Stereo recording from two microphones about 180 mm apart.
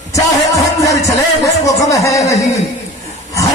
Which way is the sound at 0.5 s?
20° left (ahead or behind).